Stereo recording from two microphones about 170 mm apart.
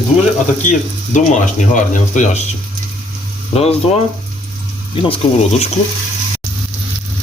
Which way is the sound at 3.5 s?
35° left (ahead or behind).